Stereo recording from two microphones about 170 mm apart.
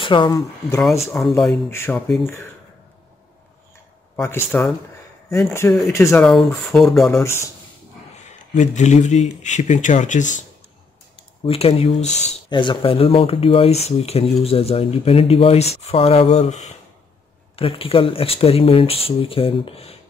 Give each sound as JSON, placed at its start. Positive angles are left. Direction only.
{"t": 0.0, "sound": "speech", "side_deg": 30}
{"t": 1.0, "sound": "speech", "side_deg": 0}
{"t": 1.7, "sound": "speech", "side_deg": 10}
{"t": 4.2, "sound": "speech", "side_deg": 15}
{"t": 5.7, "sound": "speech", "side_deg": 0}
{"t": 5.9, "sound": "speech", "side_deg": 15}
{"t": 6.2, "sound": "speech", "side_deg": 0}
{"t": 7.1, "sound": "speech", "side_deg": 15}
{"t": 8.3, "sound": "speech", "side_deg": 45}
{"t": 11.4, "sound": "speech", "side_deg": 35}
{"t": 12.4, "sound": "speech", "side_deg": 30}